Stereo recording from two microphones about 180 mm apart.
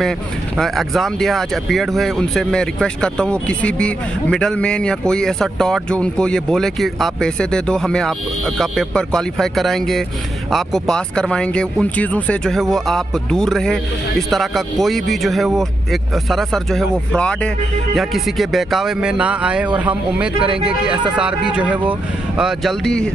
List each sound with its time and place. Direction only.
0.6 s speech: centre (ahead or behind)